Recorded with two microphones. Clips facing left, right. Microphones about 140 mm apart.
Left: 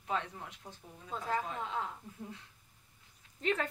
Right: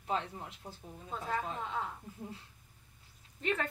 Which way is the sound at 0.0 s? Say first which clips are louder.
Right 1 dB; 30° right (ahead or behind).